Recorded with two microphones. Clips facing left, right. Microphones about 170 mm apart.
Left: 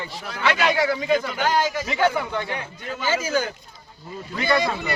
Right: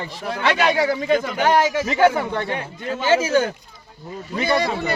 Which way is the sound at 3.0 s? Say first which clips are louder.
Right 6 dB; 70° right (ahead or behind).